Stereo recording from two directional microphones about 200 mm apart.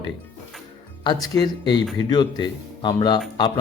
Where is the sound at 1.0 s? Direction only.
20° left (ahead or behind).